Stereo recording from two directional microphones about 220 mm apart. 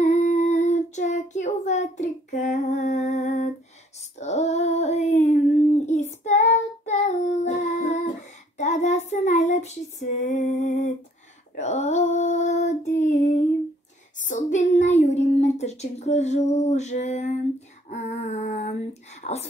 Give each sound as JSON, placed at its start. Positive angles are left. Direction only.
{"t": 0.0, "sound": "child singing", "side_deg": 30}
{"t": 10.3, "sound": "a sound", "side_deg": 35}
{"t": 11.5, "sound": "female singing", "side_deg": 35}
{"t": 19.2, "sound": "whispering", "side_deg": 35}